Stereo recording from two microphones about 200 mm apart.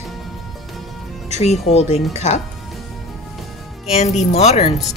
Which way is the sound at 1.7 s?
30° left (ahead or behind).